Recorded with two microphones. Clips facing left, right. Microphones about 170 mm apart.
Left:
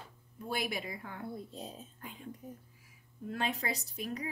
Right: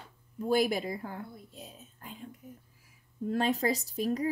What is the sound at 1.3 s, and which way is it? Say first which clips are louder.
Speech: left 5 dB; 35° left (ahead or behind).